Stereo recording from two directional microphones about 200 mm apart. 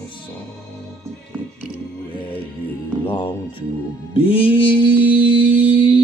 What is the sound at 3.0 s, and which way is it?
Music, 25° left (ahead or behind).